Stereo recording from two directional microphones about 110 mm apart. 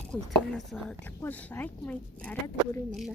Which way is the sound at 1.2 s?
15° left (ahead or behind).